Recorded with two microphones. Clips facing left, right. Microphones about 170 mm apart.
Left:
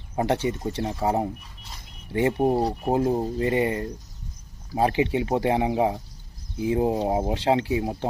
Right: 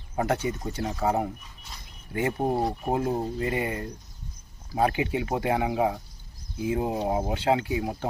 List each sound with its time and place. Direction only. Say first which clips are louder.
0.2 s speech: left 3 dB; 30° left (ahead or behind)
2.4 s speech: left 5 dB; 15° left (ahead or behind)
2.8 s speech: left 4 dB; 30° left (ahead or behind)